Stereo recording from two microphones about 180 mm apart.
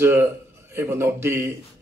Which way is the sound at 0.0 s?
15° right (ahead or behind).